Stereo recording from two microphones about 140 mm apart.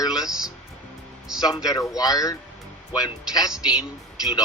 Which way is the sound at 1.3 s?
5° right (ahead or behind).